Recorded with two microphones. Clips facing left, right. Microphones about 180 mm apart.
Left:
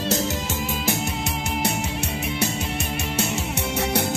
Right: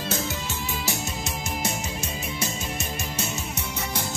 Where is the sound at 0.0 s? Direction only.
40° left (ahead or behind).